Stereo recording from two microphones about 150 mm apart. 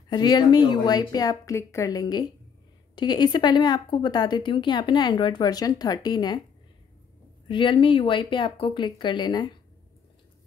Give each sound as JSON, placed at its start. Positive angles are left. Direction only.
{"t": 0.1, "sound": "a woman's voice", "side_deg": 30}
{"t": 7.4, "sound": "speech", "side_deg": 30}